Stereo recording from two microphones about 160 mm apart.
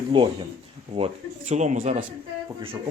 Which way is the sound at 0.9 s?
40° right (ahead or behind).